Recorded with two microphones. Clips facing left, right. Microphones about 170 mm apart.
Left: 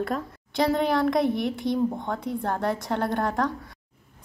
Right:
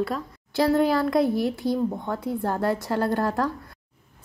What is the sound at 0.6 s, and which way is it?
A woman's voice, 5° right (ahead or behind).